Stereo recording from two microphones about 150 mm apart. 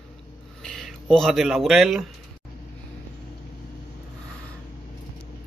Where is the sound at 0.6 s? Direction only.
Centre (ahead or behind).